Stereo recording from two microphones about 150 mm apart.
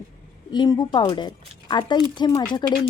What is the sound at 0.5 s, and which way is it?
A woman's voice, 30° left (ahead or behind).